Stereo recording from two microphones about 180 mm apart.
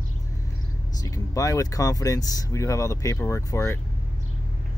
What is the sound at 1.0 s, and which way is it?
Speech, 20° left (ahead or behind).